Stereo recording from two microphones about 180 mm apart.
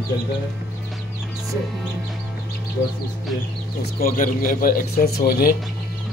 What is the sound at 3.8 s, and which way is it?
Speech, 55° left (ahead or behind).